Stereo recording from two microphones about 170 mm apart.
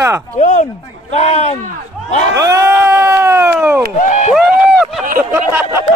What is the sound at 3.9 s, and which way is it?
Speech, 45° left (ahead or behind).